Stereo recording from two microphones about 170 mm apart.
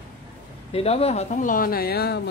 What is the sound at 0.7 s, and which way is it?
Speech, 35° left (ahead or behind).